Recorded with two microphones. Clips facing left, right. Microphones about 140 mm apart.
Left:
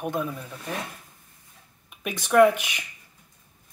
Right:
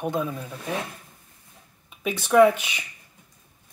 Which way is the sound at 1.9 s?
15° left (ahead or behind).